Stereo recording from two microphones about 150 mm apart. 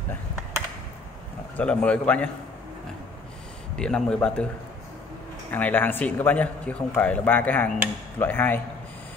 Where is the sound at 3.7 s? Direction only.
5° left (ahead or behind).